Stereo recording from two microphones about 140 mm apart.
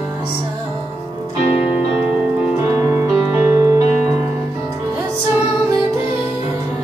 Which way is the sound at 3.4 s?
20° right (ahead or behind).